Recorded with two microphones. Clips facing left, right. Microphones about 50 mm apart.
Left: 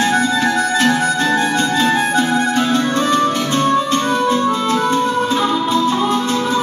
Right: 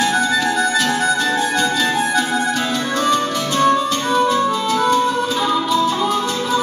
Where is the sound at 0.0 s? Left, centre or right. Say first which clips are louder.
Left 2 dB; left.